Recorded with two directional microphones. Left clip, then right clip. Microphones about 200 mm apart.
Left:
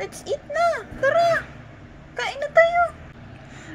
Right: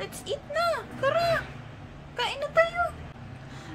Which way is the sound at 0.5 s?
20° left (ahead or behind).